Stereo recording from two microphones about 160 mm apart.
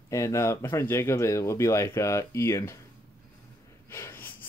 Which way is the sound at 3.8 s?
15° left (ahead or behind).